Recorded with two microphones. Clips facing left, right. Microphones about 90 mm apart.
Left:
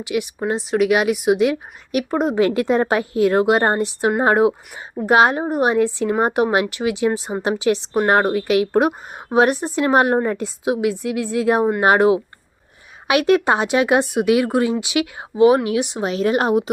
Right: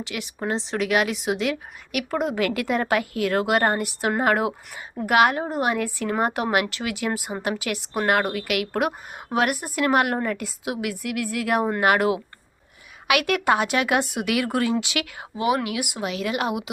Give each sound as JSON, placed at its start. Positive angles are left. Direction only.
{"t": 0.0, "sound": "speech", "side_deg": 15}
{"t": 15.4, "sound": "speech", "side_deg": 30}